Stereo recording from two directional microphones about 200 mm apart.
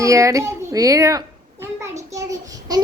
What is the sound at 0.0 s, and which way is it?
A child's voice, 15° right (ahead or behind).